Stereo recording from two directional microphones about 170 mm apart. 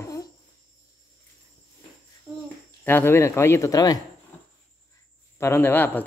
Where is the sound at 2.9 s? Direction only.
15° left (ahead or behind).